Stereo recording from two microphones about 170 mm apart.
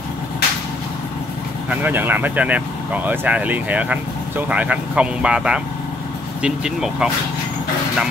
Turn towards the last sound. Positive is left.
turn(degrees=-5)  # may be behind; listen again after turning